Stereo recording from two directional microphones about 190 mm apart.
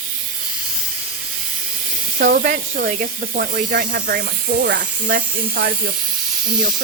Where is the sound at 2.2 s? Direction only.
50° right (ahead or behind).